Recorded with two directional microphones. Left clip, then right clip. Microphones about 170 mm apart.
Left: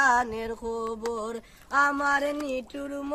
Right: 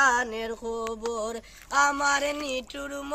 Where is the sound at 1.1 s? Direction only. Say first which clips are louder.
Right 1 dB; 70° left (ahead or behind).